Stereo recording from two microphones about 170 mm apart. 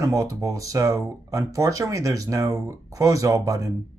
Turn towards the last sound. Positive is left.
turn(degrees=-20)  # may be behind; listen again after turning